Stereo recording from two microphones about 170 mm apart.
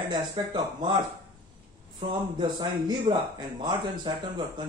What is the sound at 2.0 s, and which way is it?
Speech, 30° right (ahead or behind).